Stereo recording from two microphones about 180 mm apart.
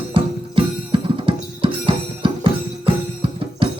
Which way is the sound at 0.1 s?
30° right (ahead or behind).